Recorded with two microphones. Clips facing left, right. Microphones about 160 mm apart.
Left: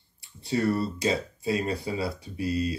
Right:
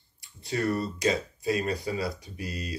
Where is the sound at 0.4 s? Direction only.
30° left (ahead or behind).